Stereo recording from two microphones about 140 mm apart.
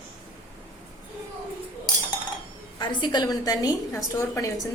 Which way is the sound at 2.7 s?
35° left (ahead or behind).